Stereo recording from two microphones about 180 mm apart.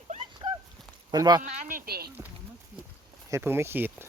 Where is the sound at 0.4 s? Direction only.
30° right (ahead or behind).